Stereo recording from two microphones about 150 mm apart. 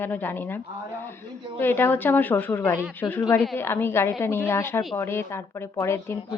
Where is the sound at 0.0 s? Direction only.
15° left (ahead or behind).